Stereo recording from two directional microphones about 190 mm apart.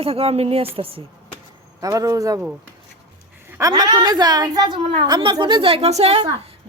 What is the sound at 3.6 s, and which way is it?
Speech, 20° right (ahead or behind).